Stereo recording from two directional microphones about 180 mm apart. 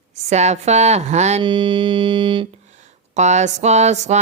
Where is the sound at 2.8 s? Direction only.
40° right (ahead or behind).